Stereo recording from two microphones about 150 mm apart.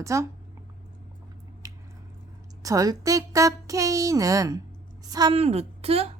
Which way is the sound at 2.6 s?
20° right (ahead or behind).